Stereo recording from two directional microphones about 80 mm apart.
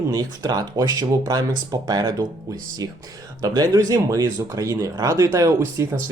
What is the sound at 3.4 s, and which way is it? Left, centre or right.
Speech, right.